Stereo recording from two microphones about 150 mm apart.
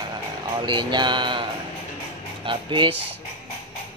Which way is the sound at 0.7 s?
30° right (ahead or behind).